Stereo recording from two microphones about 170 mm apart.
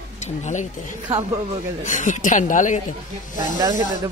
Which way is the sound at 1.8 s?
45° left (ahead or behind).